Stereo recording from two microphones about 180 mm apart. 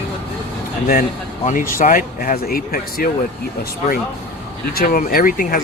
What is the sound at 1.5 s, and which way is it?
Speech, 50° left (ahead or behind).